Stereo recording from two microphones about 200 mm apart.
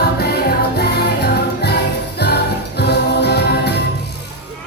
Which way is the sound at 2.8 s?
55° left (ahead or behind).